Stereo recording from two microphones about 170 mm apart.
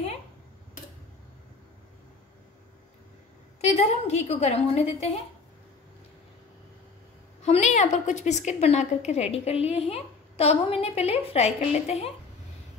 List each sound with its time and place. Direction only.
3.6 s a woman's voice: 40° left (ahead or behind)
7.4 s a woman's voice: 40° left (ahead or behind)